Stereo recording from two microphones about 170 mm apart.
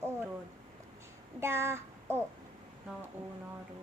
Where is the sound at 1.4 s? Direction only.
15° right (ahead or behind).